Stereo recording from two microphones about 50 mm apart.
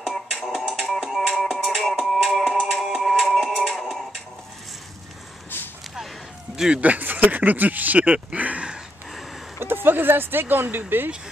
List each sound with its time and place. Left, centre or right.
0.3 s music: centre
6.5 s speech: centre
6.8 s speech: right
9.6 s speech: right